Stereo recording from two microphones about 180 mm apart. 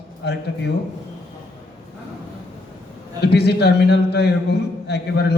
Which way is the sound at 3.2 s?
65° left (ahead or behind).